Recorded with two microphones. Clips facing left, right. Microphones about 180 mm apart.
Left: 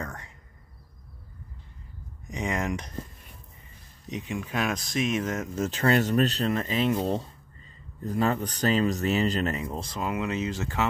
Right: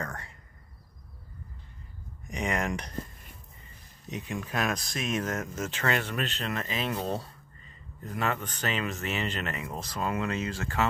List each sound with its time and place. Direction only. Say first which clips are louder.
0.0 s a sound: even; 15° left (ahead or behind)
2.4 s speech: left 1 dB; 20° left (ahead or behind)
4.1 s speech: left 2 dB; 15° left (ahead or behind)
5.6 s speech: left 8 dB; 35° left (ahead or behind)
9.7 s speech: left 1 dB; 25° left (ahead or behind)